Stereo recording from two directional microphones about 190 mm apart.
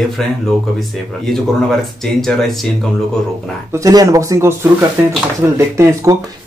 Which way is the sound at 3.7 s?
15° right (ahead or behind).